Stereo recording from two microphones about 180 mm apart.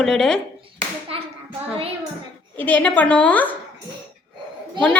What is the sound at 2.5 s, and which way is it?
Speech, 10° left (ahead or behind).